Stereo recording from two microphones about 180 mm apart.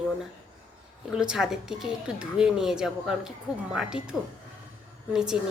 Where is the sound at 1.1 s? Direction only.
5° right (ahead or behind).